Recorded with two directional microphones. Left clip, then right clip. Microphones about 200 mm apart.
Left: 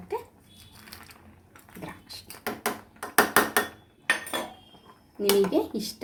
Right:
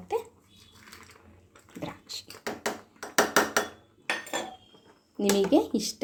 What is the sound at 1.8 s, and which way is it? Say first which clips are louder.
Speech: right 3 dB; 45° right (ahead or behind).